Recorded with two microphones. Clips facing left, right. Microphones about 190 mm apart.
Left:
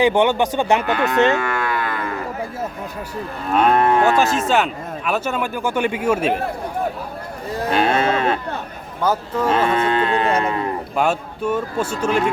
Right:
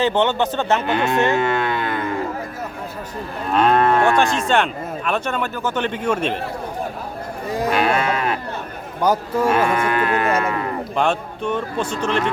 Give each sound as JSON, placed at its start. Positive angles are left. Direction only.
{"t": 0.0, "sound": "speech", "side_deg": 10}
{"t": 0.8, "sound": "speech", "side_deg": -20}
{"t": 1.3, "sound": "livestock", "side_deg": -25}
{"t": 3.5, "sound": "moo", "side_deg": 5}
{"t": 4.2, "sound": "speech", "side_deg": 5}
{"t": 7.7, "sound": "sheep", "side_deg": 30}
{"t": 9.0, "sound": "a man's voice", "side_deg": -10}
{"t": 9.6, "sound": "speech", "side_deg": 25}
{"t": 10.9, "sound": "speech", "side_deg": 5}